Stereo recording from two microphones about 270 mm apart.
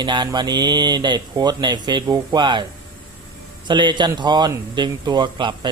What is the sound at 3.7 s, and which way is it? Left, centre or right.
Speech, centre.